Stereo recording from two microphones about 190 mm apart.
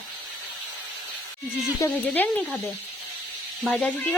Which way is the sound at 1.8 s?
10° left (ahead or behind).